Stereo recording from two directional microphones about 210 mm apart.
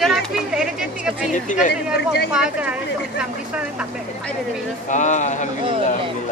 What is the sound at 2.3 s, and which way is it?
Speech, 5° right (ahead or behind).